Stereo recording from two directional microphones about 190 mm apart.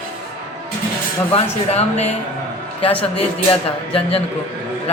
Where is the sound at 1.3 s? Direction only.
35° left (ahead or behind).